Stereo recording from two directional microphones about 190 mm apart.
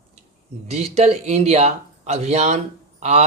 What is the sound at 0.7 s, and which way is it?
Speech, 35° right (ahead or behind).